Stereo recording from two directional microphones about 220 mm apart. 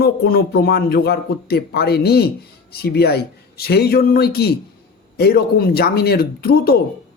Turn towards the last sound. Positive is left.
turn(degrees=45)  # may be behind; listen again after turning